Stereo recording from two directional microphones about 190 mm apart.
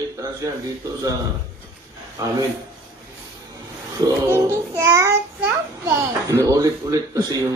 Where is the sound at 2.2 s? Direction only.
15° right (ahead or behind).